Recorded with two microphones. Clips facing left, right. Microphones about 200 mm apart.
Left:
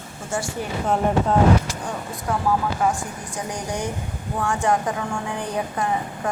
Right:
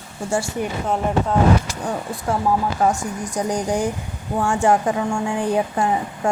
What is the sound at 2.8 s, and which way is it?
Speech, 40° right (ahead or behind).